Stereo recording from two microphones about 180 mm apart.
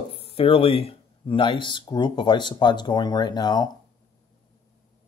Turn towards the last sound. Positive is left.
turn(degrees=25)  # may be behind; listen again after turning